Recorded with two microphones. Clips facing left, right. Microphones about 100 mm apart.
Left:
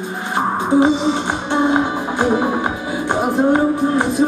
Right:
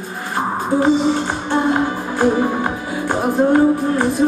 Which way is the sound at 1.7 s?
15° left (ahead or behind).